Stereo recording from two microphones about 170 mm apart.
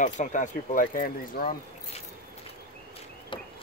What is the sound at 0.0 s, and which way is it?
Speech, 45° left (ahead or behind).